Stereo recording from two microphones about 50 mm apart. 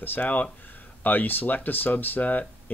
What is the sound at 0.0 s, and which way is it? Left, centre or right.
Speech, left.